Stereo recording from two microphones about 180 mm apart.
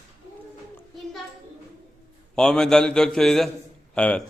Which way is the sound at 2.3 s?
5° left (ahead or behind).